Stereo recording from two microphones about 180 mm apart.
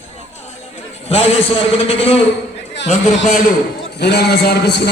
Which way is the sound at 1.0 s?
35° left (ahead or behind).